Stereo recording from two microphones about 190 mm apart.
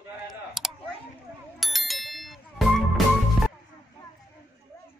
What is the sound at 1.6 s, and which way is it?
Bicycle bell, centre (ahead or behind).